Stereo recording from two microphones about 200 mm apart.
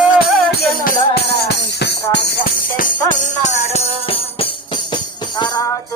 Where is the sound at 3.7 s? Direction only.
30° left (ahead or behind).